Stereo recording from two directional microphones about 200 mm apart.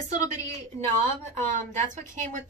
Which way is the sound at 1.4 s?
40° right (ahead or behind).